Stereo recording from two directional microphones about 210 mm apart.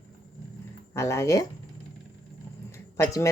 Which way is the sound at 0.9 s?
15° left (ahead or behind).